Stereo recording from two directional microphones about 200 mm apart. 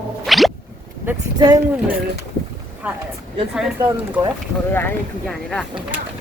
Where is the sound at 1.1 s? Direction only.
20° right (ahead or behind).